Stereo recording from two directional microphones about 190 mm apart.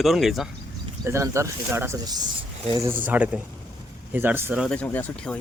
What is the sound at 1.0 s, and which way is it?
A man's voice, 15° right (ahead or behind).